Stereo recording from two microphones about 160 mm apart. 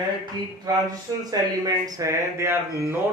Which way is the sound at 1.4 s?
25° right (ahead or behind).